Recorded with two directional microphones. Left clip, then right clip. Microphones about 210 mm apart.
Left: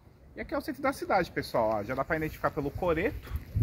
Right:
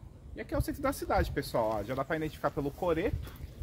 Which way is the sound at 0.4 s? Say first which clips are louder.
Left 2 dB; 15° right (ahead or behind).